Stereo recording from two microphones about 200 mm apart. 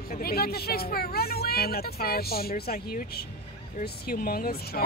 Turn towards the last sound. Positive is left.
turn(degrees=50)  # may be behind; listen again after turning